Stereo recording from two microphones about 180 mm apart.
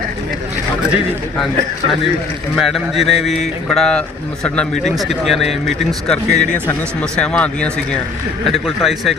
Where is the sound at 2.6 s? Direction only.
Centre (ahead or behind).